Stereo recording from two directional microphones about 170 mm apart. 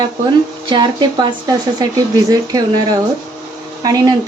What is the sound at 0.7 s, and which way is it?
A woman's voice, 30° right (ahead or behind).